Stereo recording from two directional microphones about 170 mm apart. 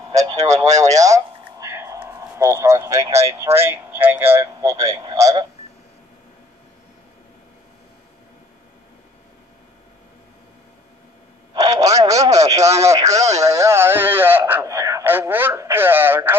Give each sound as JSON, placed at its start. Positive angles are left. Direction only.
{"t": 0.1, "sound": "speech", "side_deg": -20}
{"t": 11.5, "sound": "a man's voice", "side_deg": -20}